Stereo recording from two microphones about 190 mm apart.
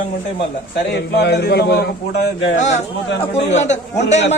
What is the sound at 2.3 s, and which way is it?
Speech, 75° left (ahead or behind).